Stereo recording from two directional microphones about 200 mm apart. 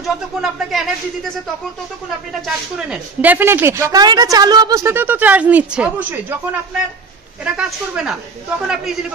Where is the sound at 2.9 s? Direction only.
10° right (ahead or behind).